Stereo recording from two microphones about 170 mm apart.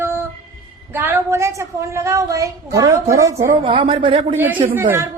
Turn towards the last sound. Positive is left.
turn(degrees=-15)  # may be behind; listen again after turning